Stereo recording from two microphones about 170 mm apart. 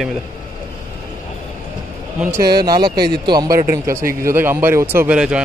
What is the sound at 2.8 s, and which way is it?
Speech, 65° right (ahead or behind).